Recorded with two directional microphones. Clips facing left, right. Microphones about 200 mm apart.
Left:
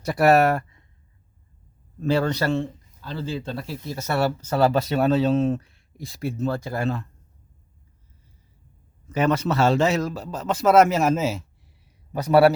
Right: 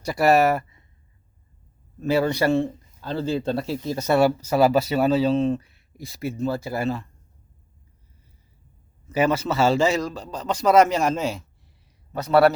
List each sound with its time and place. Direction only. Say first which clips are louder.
0.0 s speech: left 1 dB; centre (ahead or behind)
2.0 s a man's voice: right 1 dB; 10° right (ahead or behind)
3.1 s speech: right 5 dB; 45° right (ahead or behind)
3.5 s speech: right 6 dB; 25° right (ahead or behind); by 7.1 s centre (ahead or behind)
9.0 s a man's voice: even; 5° right (ahead or behind); by 12.5 s 10° left (ahead or behind)